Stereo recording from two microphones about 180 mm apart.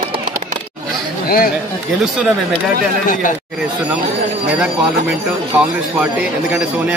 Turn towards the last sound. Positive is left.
turn(degrees=-5)  # may be behind; listen again after turning